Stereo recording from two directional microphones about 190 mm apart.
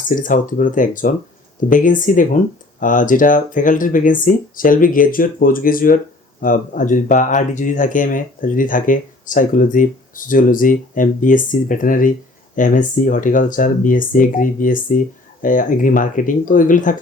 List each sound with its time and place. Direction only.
0.1 s speech: 45° left (ahead or behind)